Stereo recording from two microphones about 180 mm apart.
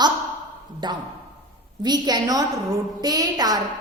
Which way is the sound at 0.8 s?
25° right (ahead or behind).